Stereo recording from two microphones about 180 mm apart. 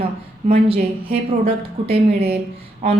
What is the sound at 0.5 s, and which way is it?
A woman's voice, 30° right (ahead or behind).